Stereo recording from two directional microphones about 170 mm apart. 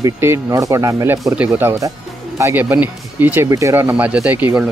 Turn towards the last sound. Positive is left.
turn(degrees=-10)  # may be behind; listen again after turning